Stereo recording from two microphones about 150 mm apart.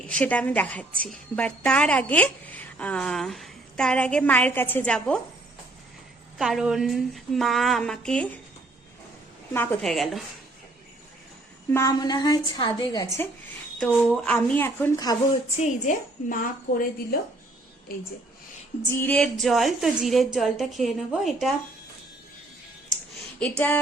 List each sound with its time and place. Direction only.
0.1 s a woman's voice: 10° left (ahead or behind)
6.4 s a woman's voice: 5° right (ahead or behind)
9.5 s a woman's voice: 15° left (ahead or behind)
9.8 s a woman's voice: centre (ahead or behind)
11.7 s a woman's voice: 20° left (ahead or behind)
13.7 s a woman's voice: 5° left (ahead or behind)
15.5 s a woman's voice: 55° left (ahead or behind)
18.9 s a woman's voice: 15° left (ahead or behind)
23.4 s a woman's voice: 10° left (ahead or behind)